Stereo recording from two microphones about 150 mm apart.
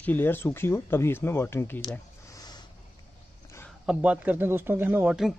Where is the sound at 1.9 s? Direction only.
25° left (ahead or behind).